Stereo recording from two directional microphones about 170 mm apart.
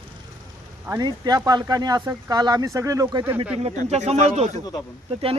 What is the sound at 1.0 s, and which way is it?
Speech, 25° right (ahead or behind).